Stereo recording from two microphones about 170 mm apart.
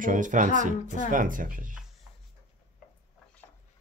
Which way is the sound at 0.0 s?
50° right (ahead or behind).